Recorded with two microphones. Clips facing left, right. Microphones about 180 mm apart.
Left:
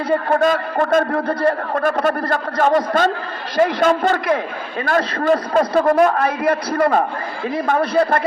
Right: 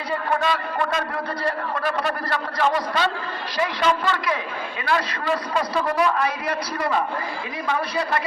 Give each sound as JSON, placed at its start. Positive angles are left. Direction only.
{"t": 0.1, "sound": "a man's voice", "side_deg": 50}